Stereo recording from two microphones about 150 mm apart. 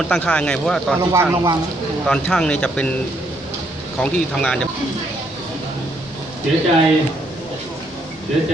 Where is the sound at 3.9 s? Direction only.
10° left (ahead or behind).